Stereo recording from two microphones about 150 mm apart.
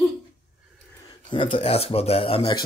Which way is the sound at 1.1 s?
30° left (ahead or behind).